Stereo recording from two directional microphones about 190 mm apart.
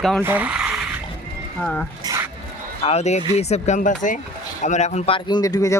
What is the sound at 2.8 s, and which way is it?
Speech, 35° left (ahead or behind).